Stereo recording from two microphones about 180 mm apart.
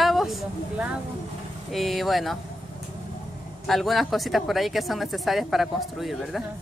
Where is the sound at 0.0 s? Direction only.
Centre (ahead or behind).